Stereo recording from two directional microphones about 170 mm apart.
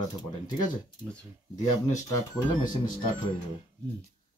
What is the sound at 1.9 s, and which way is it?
Speech, 20° left (ahead or behind).